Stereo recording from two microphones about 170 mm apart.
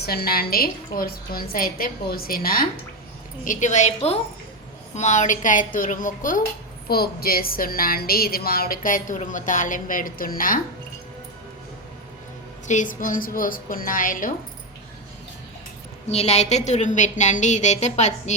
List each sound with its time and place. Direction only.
0.0 s a woman's voice: 65° left (ahead or behind)
3.4 s a woman's voice: 50° left (ahead or behind)
6.8 s a woman's voice: 65° left (ahead or behind)
12.6 s a woman's voice: 50° left (ahead or behind)
16.0 s a woman's voice: 40° left (ahead or behind)